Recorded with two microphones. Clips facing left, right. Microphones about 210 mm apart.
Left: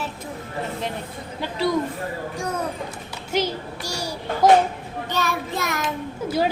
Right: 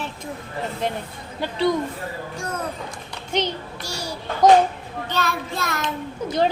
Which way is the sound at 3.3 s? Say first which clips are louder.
Left 1 dB; 10° left (ahead or behind).